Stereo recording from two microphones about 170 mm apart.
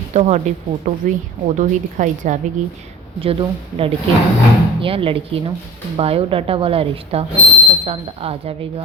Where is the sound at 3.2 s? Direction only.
35° right (ahead or behind).